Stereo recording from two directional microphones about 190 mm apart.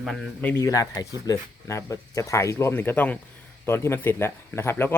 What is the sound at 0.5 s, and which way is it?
Speech, 15° left (ahead or behind).